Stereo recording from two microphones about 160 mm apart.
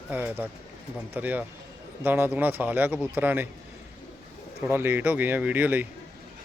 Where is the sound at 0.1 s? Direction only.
10° right (ahead or behind).